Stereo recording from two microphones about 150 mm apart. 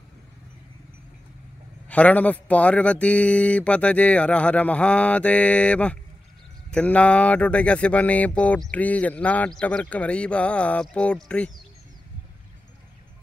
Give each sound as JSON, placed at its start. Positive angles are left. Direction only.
{"t": 1.9, "sound": "speech", "side_deg": 10}